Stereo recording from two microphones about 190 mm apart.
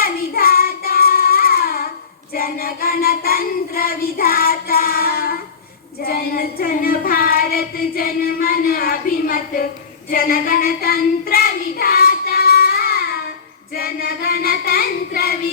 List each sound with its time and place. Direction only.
0.0 s child singing: 50° left (ahead or behind)